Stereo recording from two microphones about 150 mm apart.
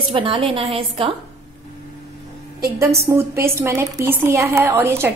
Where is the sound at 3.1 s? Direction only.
15° right (ahead or behind).